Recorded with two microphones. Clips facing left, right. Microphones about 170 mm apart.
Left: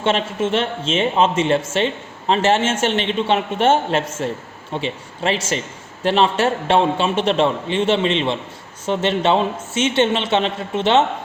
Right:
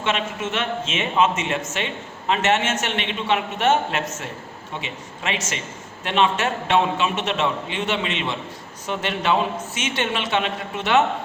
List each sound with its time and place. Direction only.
0.0 s a man's voice: 30° left (ahead or behind)